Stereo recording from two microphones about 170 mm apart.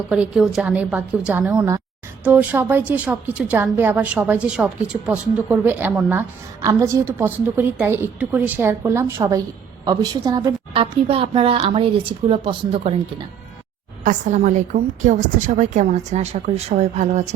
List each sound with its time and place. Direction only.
0.1 s a woman's voice: centre (ahead or behind)
1.5 s a woman's voice: 20° right (ahead or behind); by 13.0 s 35° right (ahead or behind)
14.0 s a woman's voice: 50° right (ahead or behind)